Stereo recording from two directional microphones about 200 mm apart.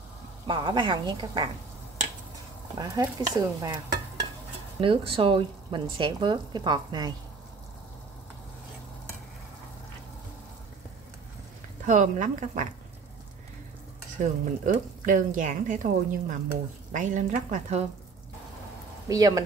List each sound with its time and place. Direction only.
0.5 s speech: 20° right (ahead or behind)
2.8 s speech: 15° right (ahead or behind)
11.8 s speech: 40° right (ahead or behind)
14.2 s speech: 40° right (ahead or behind)
19.0 s speech: 15° right (ahead or behind)